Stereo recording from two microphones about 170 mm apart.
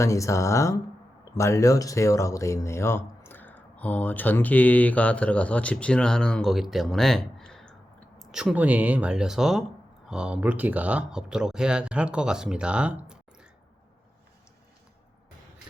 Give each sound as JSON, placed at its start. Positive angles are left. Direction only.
{"t": 0.0, "sound": "speech", "side_deg": 20}